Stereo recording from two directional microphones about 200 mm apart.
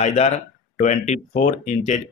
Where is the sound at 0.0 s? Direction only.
35° left (ahead or behind).